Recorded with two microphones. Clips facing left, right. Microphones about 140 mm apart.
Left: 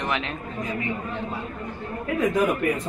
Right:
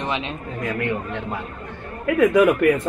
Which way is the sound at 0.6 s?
70° right (ahead or behind).